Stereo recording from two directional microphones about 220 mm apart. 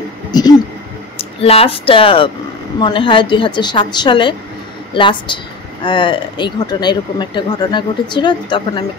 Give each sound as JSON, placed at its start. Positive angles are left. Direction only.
{"t": 0.3, "sound": "speech", "side_deg": 20}